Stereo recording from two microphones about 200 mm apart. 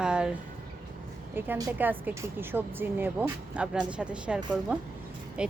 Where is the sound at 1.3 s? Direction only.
15° right (ahead or behind).